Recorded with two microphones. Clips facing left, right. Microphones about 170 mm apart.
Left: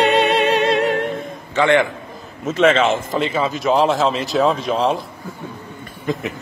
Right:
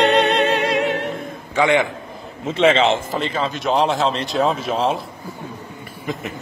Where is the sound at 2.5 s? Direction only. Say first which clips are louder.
Left 1 dB; 25° right (ahead or behind).